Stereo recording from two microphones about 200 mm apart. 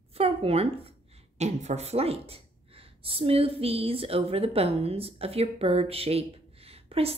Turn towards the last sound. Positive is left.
turn(degrees=-30)  # may be behind; listen again after turning